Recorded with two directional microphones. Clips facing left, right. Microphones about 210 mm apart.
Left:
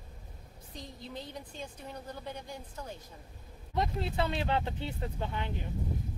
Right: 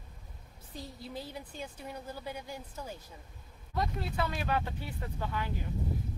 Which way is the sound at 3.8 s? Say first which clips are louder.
Left 2 dB; 25° left (ahead or behind).